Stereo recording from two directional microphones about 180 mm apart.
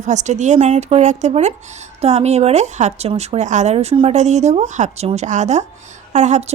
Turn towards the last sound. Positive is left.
turn(degrees=-40)  # may be behind; listen again after turning